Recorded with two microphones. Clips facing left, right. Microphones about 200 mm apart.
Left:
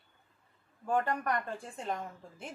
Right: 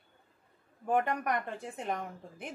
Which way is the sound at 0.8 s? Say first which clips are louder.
Right 1 dB; 15° right (ahead or behind).